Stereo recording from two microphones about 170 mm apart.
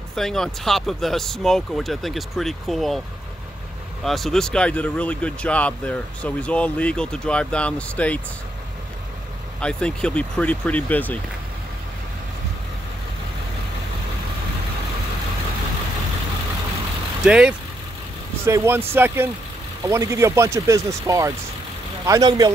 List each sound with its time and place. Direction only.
0.1 s speech: centre (ahead or behind)
4.0 s speech: centre (ahead or behind)
9.6 s speech: 5° left (ahead or behind)
17.2 s speech: 5° right (ahead or behind); by 22.5 s 20° right (ahead or behind)